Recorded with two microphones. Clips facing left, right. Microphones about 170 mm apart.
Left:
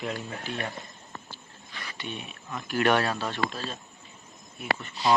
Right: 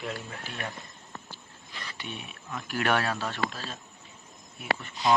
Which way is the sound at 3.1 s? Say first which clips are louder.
Left 1 dB; 10° left (ahead or behind).